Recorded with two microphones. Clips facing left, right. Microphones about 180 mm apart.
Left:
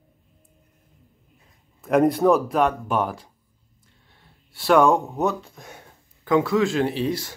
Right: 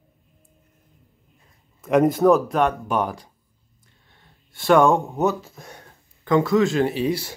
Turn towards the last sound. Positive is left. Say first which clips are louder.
# right 2 dB
turn(degrees=-5)  # may be behind; listen again after turning